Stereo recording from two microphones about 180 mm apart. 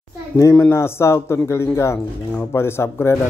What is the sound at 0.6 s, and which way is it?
Speech, 15° left (ahead or behind).